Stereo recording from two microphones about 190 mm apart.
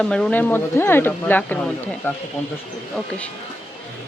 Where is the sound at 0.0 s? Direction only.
5° left (ahead or behind).